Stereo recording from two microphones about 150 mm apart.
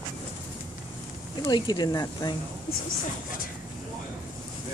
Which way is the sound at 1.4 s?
30° left (ahead or behind).